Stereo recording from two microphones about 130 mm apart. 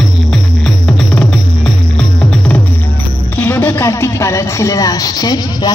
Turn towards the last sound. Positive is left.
turn(degrees=30)  # may be behind; listen again after turning